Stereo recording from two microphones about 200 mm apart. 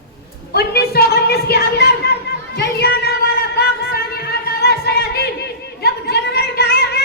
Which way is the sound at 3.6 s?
50° left (ahead or behind).